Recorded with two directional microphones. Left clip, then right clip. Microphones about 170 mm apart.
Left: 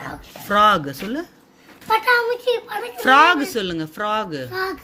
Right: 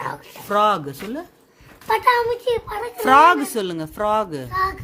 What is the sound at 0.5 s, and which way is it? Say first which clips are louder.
Speech: left 3 dB; 10° right (ahead or behind).